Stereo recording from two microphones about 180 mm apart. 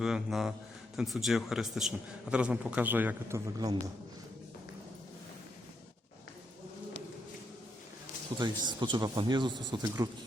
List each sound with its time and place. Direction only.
0.0 s a man's voice: centre (ahead or behind); by 3.8 s 20° right (ahead or behind)
8.4 s speech: 25° right (ahead or behind)